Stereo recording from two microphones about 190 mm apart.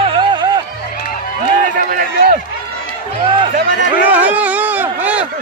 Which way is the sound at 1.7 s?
45° right (ahead or behind).